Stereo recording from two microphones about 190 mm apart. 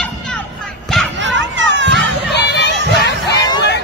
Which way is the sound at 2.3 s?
60° left (ahead or behind).